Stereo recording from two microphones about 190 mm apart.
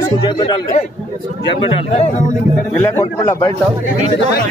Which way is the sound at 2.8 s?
10° left (ahead or behind).